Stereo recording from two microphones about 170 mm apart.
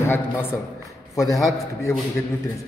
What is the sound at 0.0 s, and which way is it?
A man's voice, 15° left (ahead or behind).